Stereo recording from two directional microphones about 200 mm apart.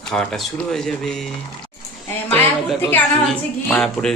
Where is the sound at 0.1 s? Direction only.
5° left (ahead or behind).